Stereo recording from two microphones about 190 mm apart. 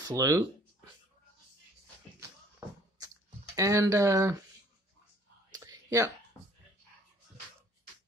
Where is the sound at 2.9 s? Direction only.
20° right (ahead or behind).